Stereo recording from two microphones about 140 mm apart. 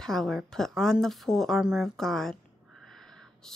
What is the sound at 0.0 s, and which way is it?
Speech, 5° left (ahead or behind).